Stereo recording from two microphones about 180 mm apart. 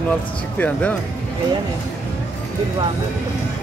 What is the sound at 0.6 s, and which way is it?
Speech, 10° left (ahead or behind).